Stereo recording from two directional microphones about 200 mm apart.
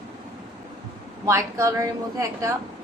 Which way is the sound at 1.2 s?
15° right (ahead or behind).